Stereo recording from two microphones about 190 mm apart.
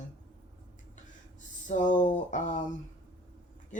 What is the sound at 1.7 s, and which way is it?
Speech, 40° left (ahead or behind).